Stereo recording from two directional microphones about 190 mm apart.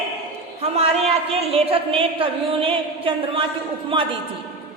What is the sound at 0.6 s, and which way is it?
A woman's voice, 35° right (ahead or behind).